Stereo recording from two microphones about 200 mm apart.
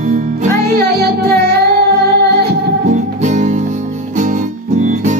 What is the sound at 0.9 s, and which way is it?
Music, 50° right (ahead or behind).